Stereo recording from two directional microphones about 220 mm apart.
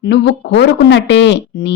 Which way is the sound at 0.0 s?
50° left (ahead or behind).